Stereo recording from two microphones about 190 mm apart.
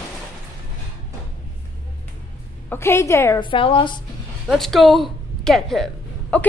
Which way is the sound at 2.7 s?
15° left (ahead or behind).